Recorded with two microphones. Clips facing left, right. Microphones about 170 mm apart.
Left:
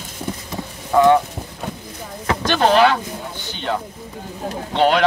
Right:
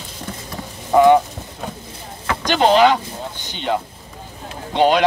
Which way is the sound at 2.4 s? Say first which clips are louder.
Right 1 dB; 15° right (ahead or behind).